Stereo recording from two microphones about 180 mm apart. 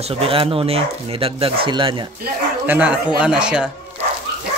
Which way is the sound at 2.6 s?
5° right (ahead or behind).